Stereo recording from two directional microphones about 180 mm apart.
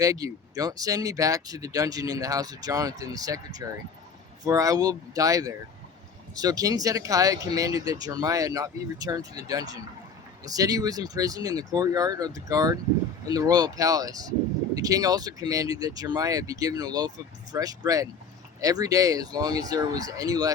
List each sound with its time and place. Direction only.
0.0 s speech: 20° right (ahead or behind)